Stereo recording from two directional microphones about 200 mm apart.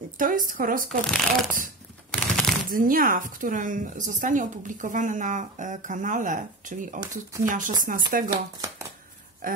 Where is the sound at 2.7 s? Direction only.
45° right (ahead or behind).